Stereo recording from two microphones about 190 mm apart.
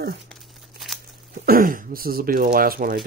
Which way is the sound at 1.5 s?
45° right (ahead or behind).